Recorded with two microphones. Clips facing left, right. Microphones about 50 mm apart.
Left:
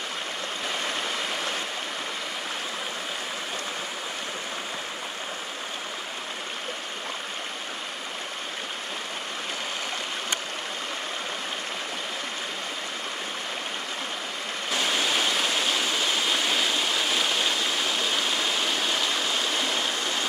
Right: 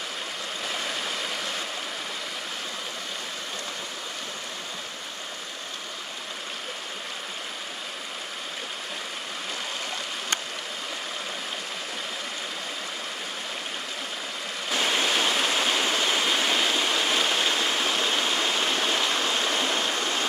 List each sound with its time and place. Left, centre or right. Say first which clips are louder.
14.8 s stream: right 1 dB; centre
19.9 s waterfall: right 1 dB; right